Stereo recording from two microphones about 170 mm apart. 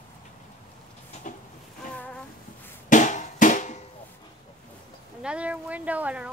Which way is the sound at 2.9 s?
45° left (ahead or behind).